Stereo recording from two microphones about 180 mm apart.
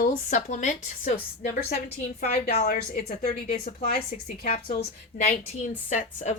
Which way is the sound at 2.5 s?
55° left (ahead or behind).